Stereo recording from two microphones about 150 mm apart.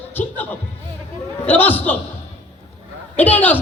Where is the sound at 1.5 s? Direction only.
10° left (ahead or behind).